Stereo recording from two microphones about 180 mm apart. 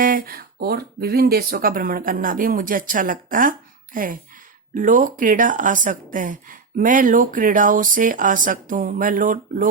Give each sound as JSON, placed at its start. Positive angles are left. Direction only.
{"t": 0.0, "sound": "speech", "side_deg": -50}